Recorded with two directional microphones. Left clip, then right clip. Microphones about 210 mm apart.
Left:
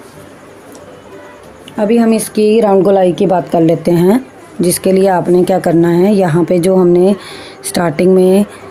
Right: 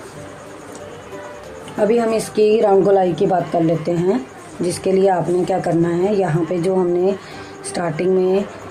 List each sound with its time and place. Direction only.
1.9 s speech: 50° left (ahead or behind)